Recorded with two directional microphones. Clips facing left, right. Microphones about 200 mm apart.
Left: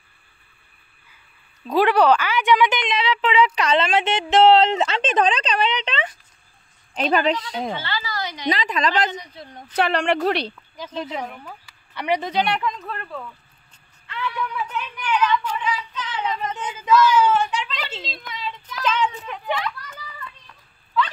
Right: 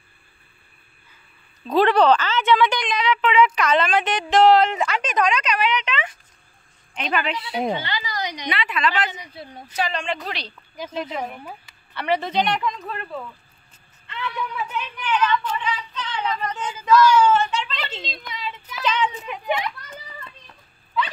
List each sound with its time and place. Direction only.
1.7 s a woman's voice: 10° left (ahead or behind); by 7.4 s 40° left (ahead or behind)
7.5 s a woman's voice: 15° right (ahead or behind)
8.5 s a woman's voice: 40° left (ahead or behind)
9.2 s speech: 10° right (ahead or behind)
9.8 s a woman's voice: 65° left (ahead or behind)
10.8 s speech: 10° right (ahead or behind)
11.9 s speech: 15° left (ahead or behind)
12.5 s a woman's voice: centre (ahead or behind)
15.4 s child singing: 10° left (ahead or behind)
16.3 s a child's voice: 20° left (ahead or behind); by 20.3 s 25° right (ahead or behind)